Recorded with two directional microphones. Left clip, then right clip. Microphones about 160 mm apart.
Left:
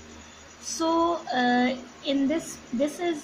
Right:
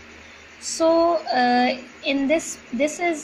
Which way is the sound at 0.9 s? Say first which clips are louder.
Right 6 dB; 15° right (ahead or behind).